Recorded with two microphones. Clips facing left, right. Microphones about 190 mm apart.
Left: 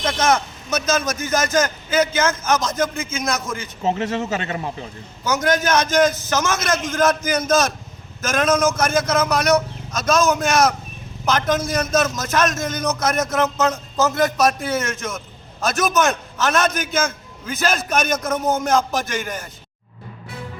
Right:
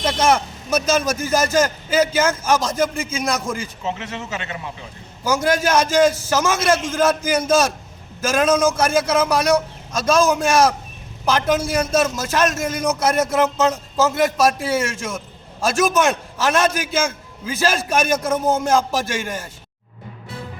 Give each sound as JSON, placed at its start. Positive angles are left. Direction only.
{"t": 0.7, "sound": "a man's voice", "side_deg": -30}
{"t": 3.8, "sound": "speech", "side_deg": 40}
{"t": 5.2, "sound": "a man's voice", "side_deg": -30}
{"t": 11.8, "sound": "speech", "side_deg": -30}
{"t": 16.7, "sound": "a man's voice", "side_deg": -10}
{"t": 17.1, "sound": "a man's voice", "side_deg": -30}